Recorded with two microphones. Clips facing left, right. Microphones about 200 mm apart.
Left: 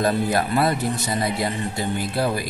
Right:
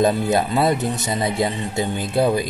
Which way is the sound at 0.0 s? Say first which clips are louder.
Right 3 dB; 20° right (ahead or behind).